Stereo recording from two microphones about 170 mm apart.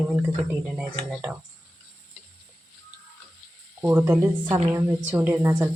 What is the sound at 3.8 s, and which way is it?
Speech, 10° right (ahead or behind).